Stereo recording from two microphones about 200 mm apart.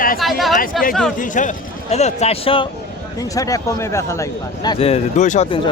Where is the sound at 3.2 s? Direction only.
15° left (ahead or behind).